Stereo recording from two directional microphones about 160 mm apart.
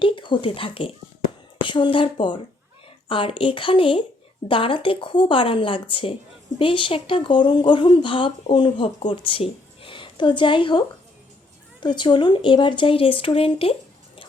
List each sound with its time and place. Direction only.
0.0 s speech: 30° left (ahead or behind)